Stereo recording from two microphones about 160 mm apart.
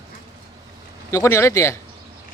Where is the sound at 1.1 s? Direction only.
15° left (ahead or behind).